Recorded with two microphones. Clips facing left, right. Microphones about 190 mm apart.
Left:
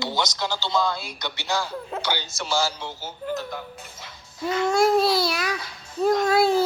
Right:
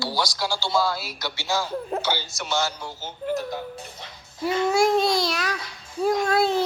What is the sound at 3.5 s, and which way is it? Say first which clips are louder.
Speech: right 3 dB; 35° right (ahead or behind).